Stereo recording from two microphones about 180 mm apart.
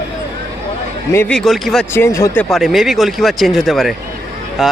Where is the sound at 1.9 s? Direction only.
15° left (ahead or behind).